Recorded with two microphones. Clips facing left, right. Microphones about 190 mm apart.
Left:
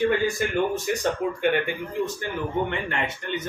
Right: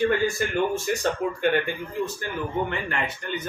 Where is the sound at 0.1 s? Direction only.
15° left (ahead or behind).